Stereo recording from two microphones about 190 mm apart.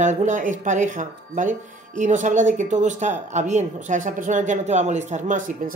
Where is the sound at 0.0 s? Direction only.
40° right (ahead or behind).